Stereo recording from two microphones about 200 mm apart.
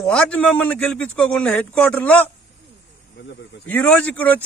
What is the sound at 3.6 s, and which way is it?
Speech, 10° left (ahead or behind).